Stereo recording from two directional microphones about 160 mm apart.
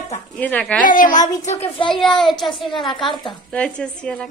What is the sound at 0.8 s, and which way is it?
Speech, 55° left (ahead or behind).